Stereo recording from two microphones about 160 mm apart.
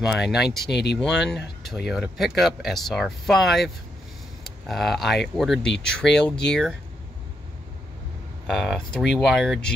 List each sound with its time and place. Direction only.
0.0 s speech: centre (ahead or behind)
0.7 s speech: 90° left
1.0 s speech: centre (ahead or behind)
8.5 s speech: centre (ahead or behind)